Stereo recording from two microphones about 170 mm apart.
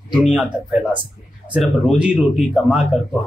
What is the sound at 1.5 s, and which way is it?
Speech, 5° right (ahead or behind).